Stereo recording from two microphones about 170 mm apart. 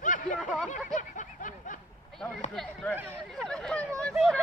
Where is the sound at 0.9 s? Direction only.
50° left (ahead or behind).